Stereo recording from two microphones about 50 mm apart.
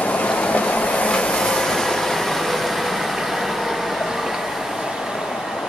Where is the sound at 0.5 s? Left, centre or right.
Left; by 1.9 s centre.